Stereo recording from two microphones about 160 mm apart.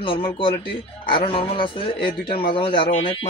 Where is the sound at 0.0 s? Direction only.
35° left (ahead or behind).